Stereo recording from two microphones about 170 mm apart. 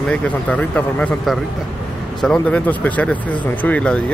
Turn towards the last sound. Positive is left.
turn(degrees=5)  # may be behind; listen again after turning